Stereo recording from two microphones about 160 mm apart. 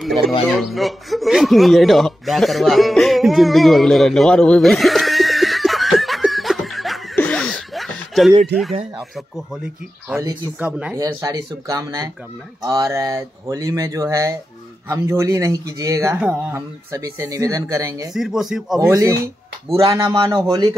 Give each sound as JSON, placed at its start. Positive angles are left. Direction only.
{"t": 0.0, "sound": "a man's voice", "side_deg": 0}
{"t": 7.2, "sound": "chuckle", "side_deg": 5}
{"t": 10.6, "sound": "speech", "side_deg": -10}
{"t": 11.0, "sound": "speech", "side_deg": -20}
{"t": 18.1, "sound": "speech", "side_deg": 0}
{"t": 18.9, "sound": "speech", "side_deg": -20}